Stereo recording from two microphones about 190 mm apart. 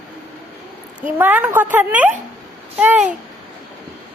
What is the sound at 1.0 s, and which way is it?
A woman's voice, 10° right (ahead or behind).